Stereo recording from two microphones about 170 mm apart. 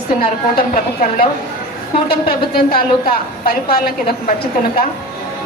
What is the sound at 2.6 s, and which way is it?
A woman's voice, 60° left (ahead or behind).